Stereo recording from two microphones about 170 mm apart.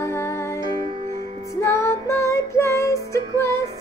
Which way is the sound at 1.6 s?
15° left (ahead or behind).